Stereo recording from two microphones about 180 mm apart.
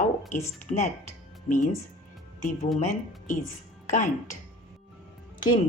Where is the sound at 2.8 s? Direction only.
45° left (ahead or behind).